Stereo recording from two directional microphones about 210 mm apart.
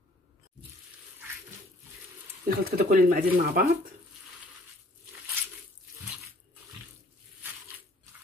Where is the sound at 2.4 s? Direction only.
45° right (ahead or behind).